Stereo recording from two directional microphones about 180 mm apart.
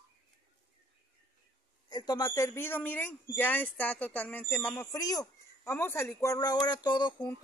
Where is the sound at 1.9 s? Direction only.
20° left (ahead or behind).